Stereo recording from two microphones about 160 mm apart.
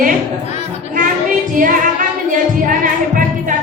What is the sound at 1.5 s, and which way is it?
Music, 55° right (ahead or behind).